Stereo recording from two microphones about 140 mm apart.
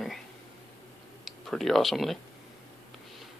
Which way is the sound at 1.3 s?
Centre (ahead or behind).